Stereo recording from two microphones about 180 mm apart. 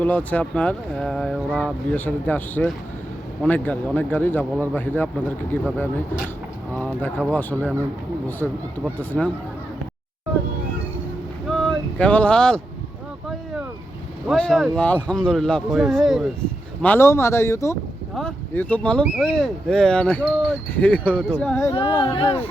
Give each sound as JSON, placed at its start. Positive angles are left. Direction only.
{"t": 0.0, "sound": "speech", "side_deg": 10}
{"t": 7.5, "sound": "speech", "side_deg": -5}
{"t": 8.3, "sound": "speech", "side_deg": 10}
{"t": 11.4, "sound": "a sound", "side_deg": 0}
{"t": 14.3, "sound": "speech", "side_deg": 5}
{"t": 16.8, "sound": "speech", "side_deg": 10}
{"t": 21.8, "sound": "speech", "side_deg": 30}